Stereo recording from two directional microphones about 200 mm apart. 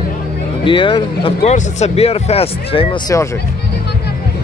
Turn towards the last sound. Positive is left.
turn(degrees=30)  # may be behind; listen again after turning